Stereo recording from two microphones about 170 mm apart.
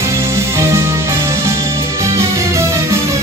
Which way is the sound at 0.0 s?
15° right (ahead or behind).